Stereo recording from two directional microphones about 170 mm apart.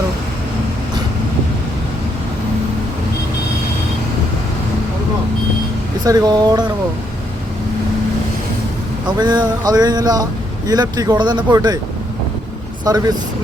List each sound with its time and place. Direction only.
6.1 s speech: 25° right (ahead or behind)
9.0 s speech: 25° right (ahead or behind)
12.9 s speech: 20° right (ahead or behind)